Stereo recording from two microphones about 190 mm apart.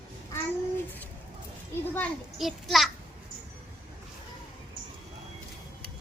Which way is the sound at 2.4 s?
Centre (ahead or behind).